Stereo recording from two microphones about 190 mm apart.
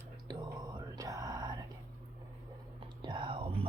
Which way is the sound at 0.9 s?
20° right (ahead or behind).